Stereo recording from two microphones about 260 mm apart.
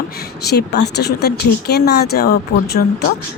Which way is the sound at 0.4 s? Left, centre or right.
Left.